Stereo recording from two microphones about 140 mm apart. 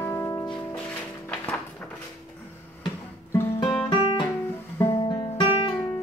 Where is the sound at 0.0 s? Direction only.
20° left (ahead or behind).